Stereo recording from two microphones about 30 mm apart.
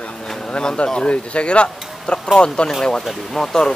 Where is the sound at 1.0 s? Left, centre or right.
Left.